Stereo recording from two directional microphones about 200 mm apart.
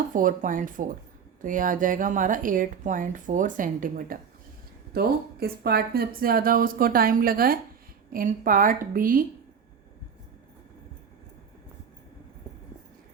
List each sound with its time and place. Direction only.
0.1 s a woman's voice: 40° right (ahead or behind)